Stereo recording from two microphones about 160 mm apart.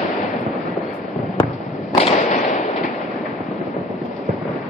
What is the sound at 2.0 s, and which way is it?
Fireworks, 45° left (ahead or behind).